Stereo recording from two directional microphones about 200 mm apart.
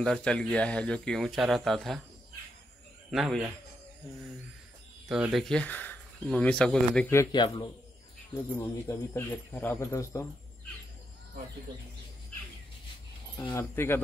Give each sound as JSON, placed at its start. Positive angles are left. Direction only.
{"t": 0.0, "sound": "speech", "side_deg": 5}
{"t": 3.1, "sound": "a man's voice", "side_deg": 0}
{"t": 5.0, "sound": "speech", "side_deg": -5}
{"t": 7.3, "sound": "a man's voice", "side_deg": 25}
{"t": 8.8, "sound": "speech", "side_deg": 15}
{"t": 13.4, "sound": "speech", "side_deg": 10}